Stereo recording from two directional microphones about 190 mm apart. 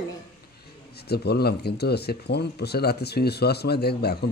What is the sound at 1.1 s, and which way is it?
Speech, 60° left (ahead or behind).